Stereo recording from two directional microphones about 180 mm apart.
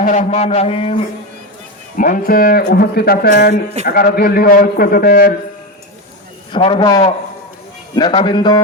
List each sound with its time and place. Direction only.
0.0 s a man's voice: 45° left (ahead or behind)
2.0 s speech: 50° left (ahead or behind)
6.5 s a man's voice: 25° left (ahead or behind)